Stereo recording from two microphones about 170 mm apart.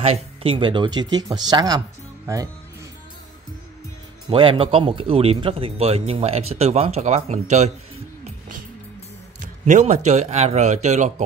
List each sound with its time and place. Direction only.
0.0 s speech: 35° right (ahead or behind); by 2.5 s 20° right (ahead or behind)
4.3 s speech: 30° right (ahead or behind)
8.2 s music: 50° right (ahead or behind)
9.4 s speech: 45° right (ahead or behind)